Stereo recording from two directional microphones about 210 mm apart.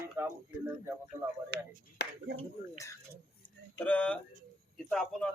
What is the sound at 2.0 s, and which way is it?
Speech, 55° left (ahead or behind).